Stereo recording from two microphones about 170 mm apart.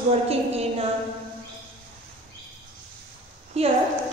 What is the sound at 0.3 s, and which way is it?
Speech, 35° right (ahead or behind).